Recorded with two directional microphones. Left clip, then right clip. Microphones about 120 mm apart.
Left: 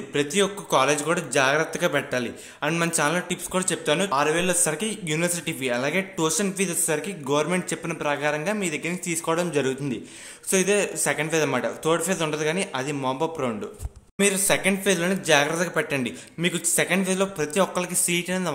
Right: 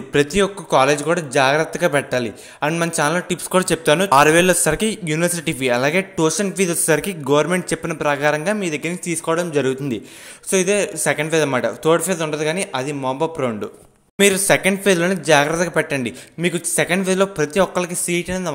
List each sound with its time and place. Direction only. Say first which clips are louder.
0.1 s speech: right 8 dB; 50° right (ahead or behind)
0.4 s speech: right 3 dB; 35° right (ahead or behind); by 4.1 s 55° right (ahead or behind)
4.1 s a man's voice: right 10 dB; 70° right (ahead or behind)
4.6 s speech: right 7 dB; 45° right (ahead or behind)
6.1 s speech: right 6 dB; 30° right (ahead or behind); by 7.4 s 45° right (ahead or behind)
7.4 s speech: right 6 dB; 35° right (ahead or behind)
14.1 s speech: right 7 dB; 50° right (ahead or behind); by 18.5 s 30° right (ahead or behind)